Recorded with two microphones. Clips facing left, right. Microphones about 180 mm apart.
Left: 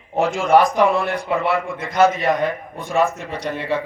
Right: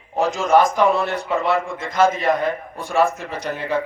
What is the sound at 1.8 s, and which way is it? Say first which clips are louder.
Speech: left 4 dB; 50° right (ahead or behind).